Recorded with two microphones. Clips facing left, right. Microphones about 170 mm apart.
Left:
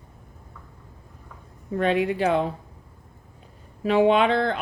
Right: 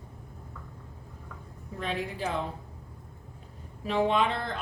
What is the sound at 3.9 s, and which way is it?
Speech, 75° left (ahead or behind).